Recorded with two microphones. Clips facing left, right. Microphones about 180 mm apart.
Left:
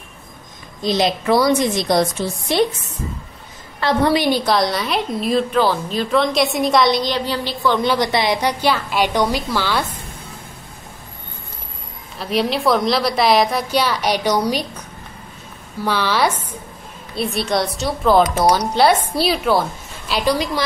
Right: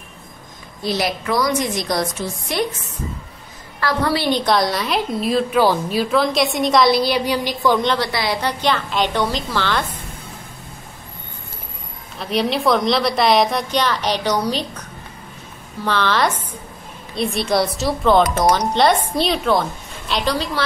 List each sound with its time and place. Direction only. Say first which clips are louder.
0.8 s a woman's voice: left 4 dB; 20° left (ahead or behind)
3.8 s a woman's voice: left 3 dB; 20° left (ahead or behind)
4.5 s a woman's voice: even; centre (ahead or behind)
7.8 s a woman's voice: left 2 dB; 10° left (ahead or behind)
8.1 s a woman's voice: left 3 dB; 20° left (ahead or behind)
12.2 s a woman's voice: even; centre (ahead or behind)